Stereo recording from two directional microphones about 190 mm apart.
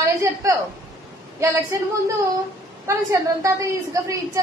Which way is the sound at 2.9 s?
15° right (ahead or behind).